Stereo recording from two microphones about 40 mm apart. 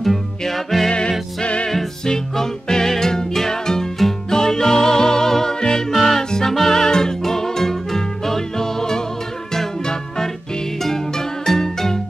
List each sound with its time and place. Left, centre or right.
0.0 s music: centre
0.8 s music: left
1.7 s music: centre